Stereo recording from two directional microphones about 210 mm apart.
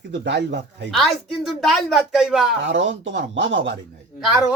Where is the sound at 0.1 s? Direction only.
55° right (ahead or behind).